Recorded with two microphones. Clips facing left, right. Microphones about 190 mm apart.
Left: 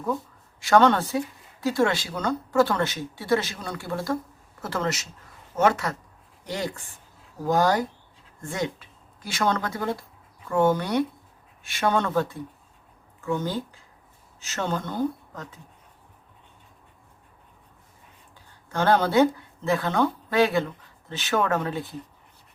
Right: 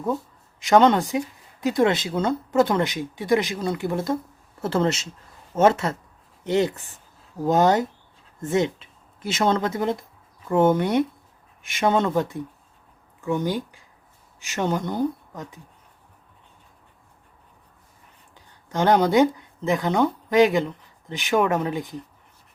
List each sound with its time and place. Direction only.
0.6 s speech: 20° right (ahead or behind)
18.7 s speech: 15° right (ahead or behind)